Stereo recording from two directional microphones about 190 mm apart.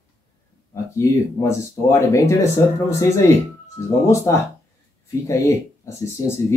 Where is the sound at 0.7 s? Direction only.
15° left (ahead or behind).